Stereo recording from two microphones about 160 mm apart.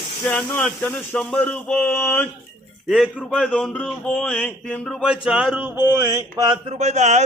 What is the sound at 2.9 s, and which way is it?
Speech, centre (ahead or behind).